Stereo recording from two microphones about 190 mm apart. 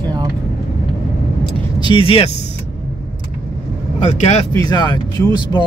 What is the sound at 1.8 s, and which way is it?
Speech, 25° left (ahead or behind).